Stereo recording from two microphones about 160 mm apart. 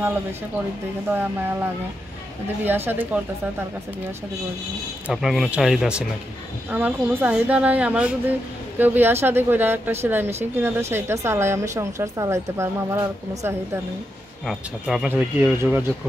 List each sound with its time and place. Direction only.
1.1 s speech: 10° right (ahead or behind)
5.0 s speech: centre (ahead or behind); by 13.0 s 15° right (ahead or behind)
14.4 s speech: centre (ahead or behind)